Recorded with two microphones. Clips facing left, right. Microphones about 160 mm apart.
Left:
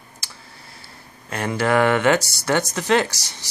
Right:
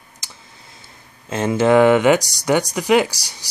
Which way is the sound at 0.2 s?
20° right (ahead or behind).